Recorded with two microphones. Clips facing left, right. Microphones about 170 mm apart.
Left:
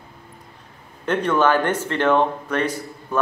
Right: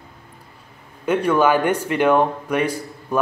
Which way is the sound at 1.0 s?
10° right (ahead or behind).